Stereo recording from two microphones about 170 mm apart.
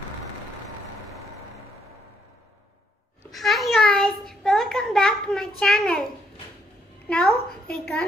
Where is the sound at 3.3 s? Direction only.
Centre (ahead or behind).